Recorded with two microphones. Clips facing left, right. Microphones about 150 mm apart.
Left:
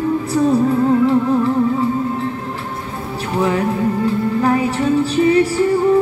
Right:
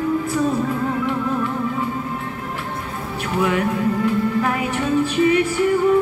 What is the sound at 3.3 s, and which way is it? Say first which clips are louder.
Music: left 2 dB; 30° left (ahead or behind).